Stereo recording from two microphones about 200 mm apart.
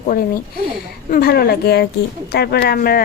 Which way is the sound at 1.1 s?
50° left (ahead or behind).